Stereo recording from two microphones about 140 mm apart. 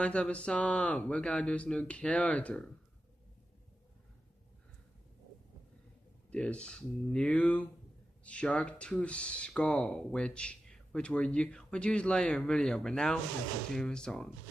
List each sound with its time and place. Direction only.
0.0 s speech: 10° left (ahead or behind)
6.3 s speech: 10° left (ahead or behind)